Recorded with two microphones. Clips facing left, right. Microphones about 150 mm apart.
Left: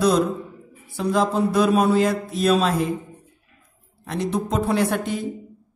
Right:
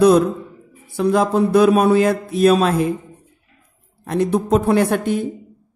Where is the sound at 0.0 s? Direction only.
60° right (ahead or behind).